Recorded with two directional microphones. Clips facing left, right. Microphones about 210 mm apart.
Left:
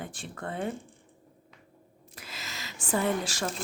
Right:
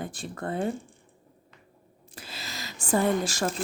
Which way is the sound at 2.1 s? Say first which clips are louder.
Right 3 dB; 30° right (ahead or behind).